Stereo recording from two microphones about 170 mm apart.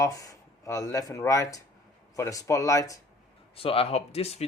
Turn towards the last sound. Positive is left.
turn(degrees=35)  # may be behind; listen again after turning